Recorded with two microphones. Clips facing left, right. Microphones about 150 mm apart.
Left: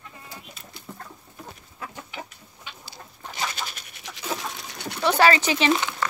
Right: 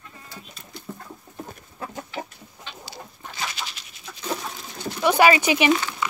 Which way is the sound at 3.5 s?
50° left (ahead or behind).